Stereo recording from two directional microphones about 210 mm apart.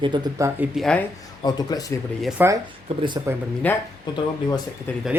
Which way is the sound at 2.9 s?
30° right (ahead or behind).